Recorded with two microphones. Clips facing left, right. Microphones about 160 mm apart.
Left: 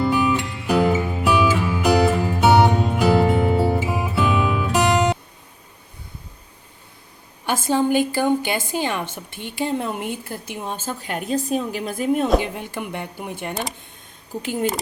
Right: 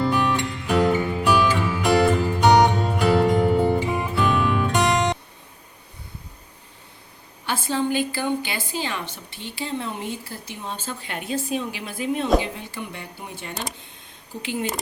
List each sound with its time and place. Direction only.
0.0 s music: 5° left (ahead or behind)
7.9 s a woman's voice: 45° left (ahead or behind)
14.4 s a woman's voice: 45° left (ahead or behind)